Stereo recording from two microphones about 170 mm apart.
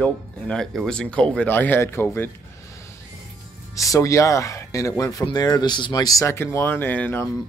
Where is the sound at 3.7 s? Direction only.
20° left (ahead or behind).